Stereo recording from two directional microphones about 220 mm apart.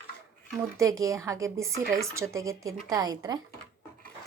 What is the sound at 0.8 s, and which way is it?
A woman's voice, 15° right (ahead or behind).